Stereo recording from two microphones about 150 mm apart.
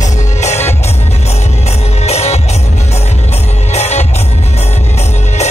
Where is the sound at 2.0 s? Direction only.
45° left (ahead or behind).